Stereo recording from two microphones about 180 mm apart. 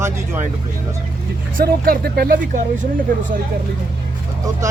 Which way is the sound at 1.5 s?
55° right (ahead or behind).